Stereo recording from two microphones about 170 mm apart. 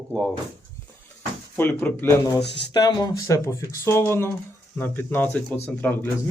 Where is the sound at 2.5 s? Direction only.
25° left (ahead or behind); by 6.1 s 10° left (ahead or behind).